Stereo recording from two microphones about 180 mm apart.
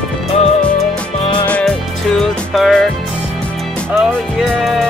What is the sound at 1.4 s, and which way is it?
Music, 5° left (ahead or behind).